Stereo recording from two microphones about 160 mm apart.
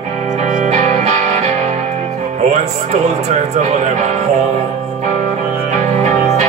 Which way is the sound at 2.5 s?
45° right (ahead or behind).